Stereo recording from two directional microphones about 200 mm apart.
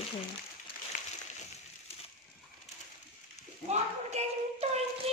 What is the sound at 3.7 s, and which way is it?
Speech, 35° right (ahead or behind).